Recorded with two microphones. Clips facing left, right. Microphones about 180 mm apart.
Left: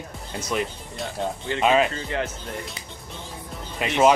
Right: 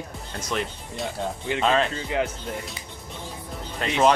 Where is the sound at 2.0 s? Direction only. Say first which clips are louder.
Right 2 dB; 15° right (ahead or behind).